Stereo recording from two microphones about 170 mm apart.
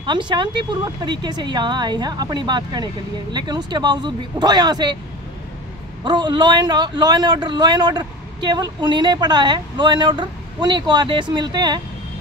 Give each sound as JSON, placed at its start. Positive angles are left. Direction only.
{"t": 0.0, "sound": "a man's voice", "side_deg": -25}
{"t": 6.0, "sound": "a man's voice", "side_deg": -25}